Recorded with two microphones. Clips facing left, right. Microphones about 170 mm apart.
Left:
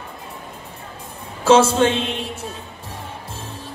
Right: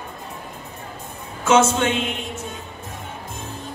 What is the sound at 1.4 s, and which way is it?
Speech, 30° left (ahead or behind).